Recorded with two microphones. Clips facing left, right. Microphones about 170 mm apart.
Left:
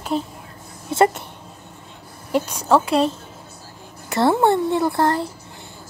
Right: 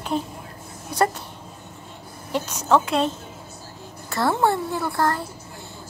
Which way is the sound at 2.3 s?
10° left (ahead or behind).